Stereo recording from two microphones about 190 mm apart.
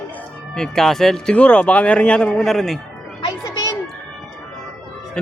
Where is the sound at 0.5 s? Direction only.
5° left (ahead or behind).